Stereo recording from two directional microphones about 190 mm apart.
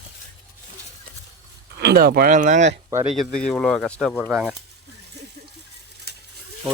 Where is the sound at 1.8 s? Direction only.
60° right (ahead or behind); by 2.7 s 40° right (ahead or behind).